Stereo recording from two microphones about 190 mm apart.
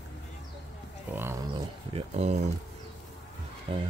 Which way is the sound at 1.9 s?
35° right (ahead or behind).